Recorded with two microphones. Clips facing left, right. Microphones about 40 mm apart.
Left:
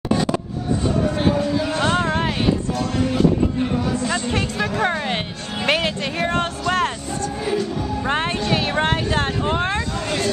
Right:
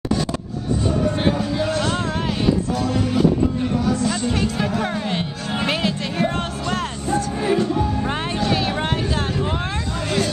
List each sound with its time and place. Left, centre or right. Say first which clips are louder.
1.3 s music: left 1 dB; centre
1.8 s a sound: left 3 dB; centre
2.7 s music: right 1 dB; centre
4.8 s music: left 2 dB; left
7.1 s music: right 3 dB; centre
8.0 s music: left 3 dB; centre
8.5 s a sound: left 1 dB; centre
9.5 s vehicle: left 4 dB; centre
10.0 s hubbub: right 2 dB; centre